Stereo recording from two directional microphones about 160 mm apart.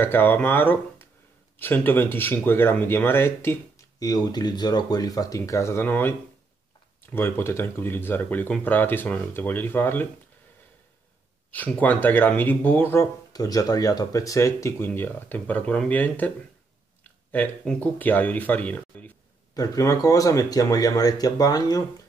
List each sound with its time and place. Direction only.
0.0 s speech: 10° left (ahead or behind)
11.5 s speech: 10° left (ahead or behind)
17.3 s speech: 10° left (ahead or behind)
19.5 s speech: 20° left (ahead or behind)